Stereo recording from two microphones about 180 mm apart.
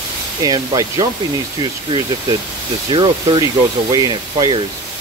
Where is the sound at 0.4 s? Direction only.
20° right (ahead or behind).